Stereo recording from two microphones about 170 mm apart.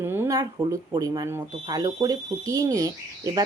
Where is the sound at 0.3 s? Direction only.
20° right (ahead or behind).